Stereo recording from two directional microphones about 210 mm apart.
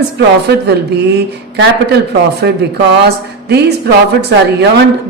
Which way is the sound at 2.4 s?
55° right (ahead or behind).